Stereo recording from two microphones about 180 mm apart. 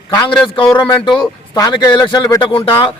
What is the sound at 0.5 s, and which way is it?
A man's voice, 20° left (ahead or behind).